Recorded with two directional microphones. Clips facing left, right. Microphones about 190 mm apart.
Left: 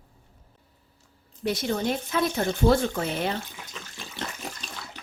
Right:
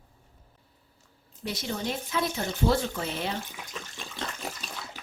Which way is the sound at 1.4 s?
55° left (ahead or behind).